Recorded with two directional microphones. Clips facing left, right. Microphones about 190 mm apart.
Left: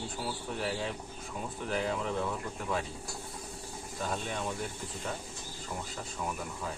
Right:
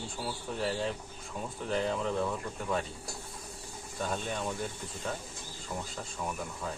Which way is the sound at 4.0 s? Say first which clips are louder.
Right 1 dB; centre (ahead or behind).